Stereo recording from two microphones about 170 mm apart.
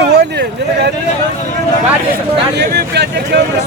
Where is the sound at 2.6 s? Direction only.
80° right.